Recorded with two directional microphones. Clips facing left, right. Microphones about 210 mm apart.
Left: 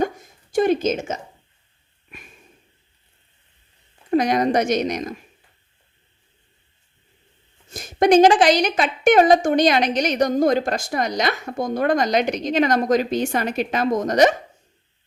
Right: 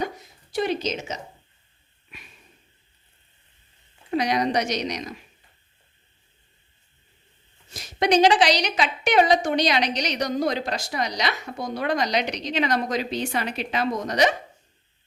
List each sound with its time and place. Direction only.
0.0 s a sound: 50° left (ahead or behind)
4.1 s a woman's voice: 50° left (ahead or behind)
7.7 s a woman's voice: 50° left (ahead or behind)